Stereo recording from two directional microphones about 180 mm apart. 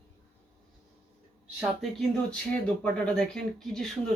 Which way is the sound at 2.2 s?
5° left (ahead or behind).